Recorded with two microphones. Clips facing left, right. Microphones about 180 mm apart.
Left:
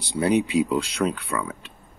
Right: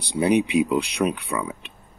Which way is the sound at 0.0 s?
20° right (ahead or behind).